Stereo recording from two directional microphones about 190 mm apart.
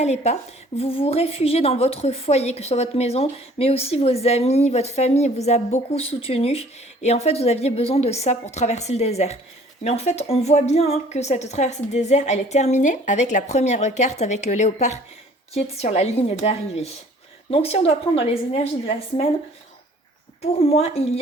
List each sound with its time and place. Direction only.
0.0 s a woman's voice: 35° left (ahead or behind)
20.4 s a woman's voice: 30° left (ahead or behind)